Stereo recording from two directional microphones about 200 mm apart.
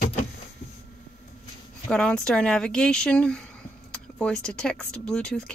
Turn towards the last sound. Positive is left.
turn(degrees=5)  # may be behind; listen again after turning